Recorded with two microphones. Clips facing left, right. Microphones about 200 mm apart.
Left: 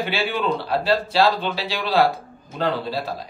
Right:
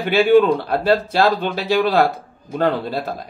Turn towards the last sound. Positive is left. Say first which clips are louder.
# right 3 dB
turn(degrees=-50)  # may be behind; listen again after turning